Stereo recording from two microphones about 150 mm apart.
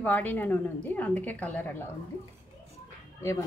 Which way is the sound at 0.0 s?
10° left (ahead or behind).